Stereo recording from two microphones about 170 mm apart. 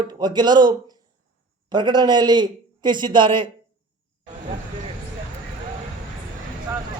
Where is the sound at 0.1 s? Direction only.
25° right (ahead or behind).